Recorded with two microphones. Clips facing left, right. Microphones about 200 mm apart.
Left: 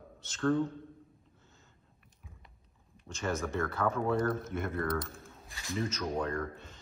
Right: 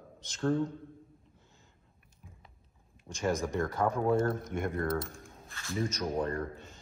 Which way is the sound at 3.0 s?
15° right (ahead or behind).